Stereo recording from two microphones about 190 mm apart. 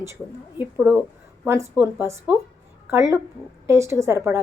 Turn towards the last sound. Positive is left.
turn(degrees=-15)  # may be behind; listen again after turning